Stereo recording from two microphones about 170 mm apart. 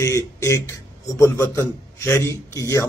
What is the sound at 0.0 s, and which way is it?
A man's voice, 20° left (ahead or behind).